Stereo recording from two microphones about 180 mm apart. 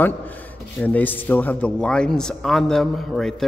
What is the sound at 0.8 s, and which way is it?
A man's voice, 10° left (ahead or behind).